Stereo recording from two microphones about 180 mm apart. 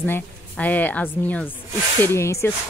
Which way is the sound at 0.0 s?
10° left (ahead or behind).